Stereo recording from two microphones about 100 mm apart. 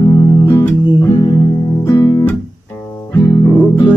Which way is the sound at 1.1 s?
45° left (ahead or behind).